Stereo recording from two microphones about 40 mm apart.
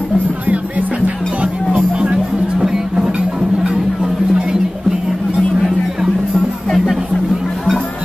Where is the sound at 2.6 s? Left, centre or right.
Centre.